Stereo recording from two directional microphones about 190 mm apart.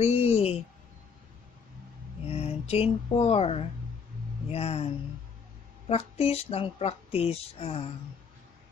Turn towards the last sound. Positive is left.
turn(degrees=30)  # may be behind; listen again after turning